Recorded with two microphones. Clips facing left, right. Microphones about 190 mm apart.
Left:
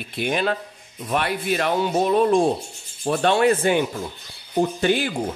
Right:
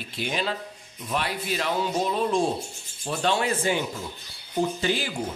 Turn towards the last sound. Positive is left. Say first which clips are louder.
# left 5 dB
turn(degrees=60)  # may be behind; listen again after turning